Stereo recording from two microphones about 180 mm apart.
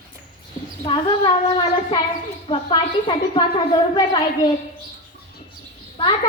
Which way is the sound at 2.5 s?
30° left (ahead or behind).